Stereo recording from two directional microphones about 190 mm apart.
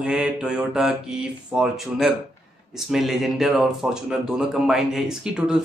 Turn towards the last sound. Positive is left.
turn(degrees=-5)  # may be behind; listen again after turning